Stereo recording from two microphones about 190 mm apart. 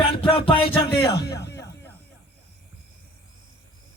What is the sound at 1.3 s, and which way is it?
Music, 60° left (ahead or behind).